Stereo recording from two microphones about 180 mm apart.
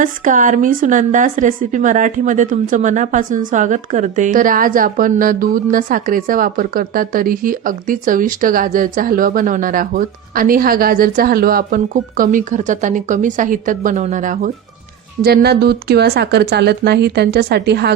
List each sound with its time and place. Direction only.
0.0 s a woman's voice: 45° right (ahead or behind)
15.2 s speech: 60° right (ahead or behind)